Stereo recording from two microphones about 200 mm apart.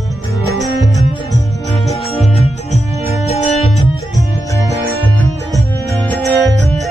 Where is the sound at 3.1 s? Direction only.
30° left (ahead or behind).